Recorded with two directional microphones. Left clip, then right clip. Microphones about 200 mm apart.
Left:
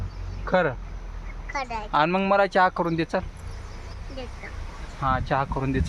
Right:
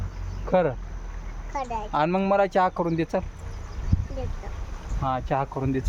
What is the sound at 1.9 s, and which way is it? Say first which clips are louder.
Speech: left 2 dB; centre (ahead or behind).